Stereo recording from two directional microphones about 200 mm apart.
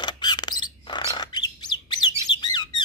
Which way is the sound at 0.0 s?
20° left (ahead or behind).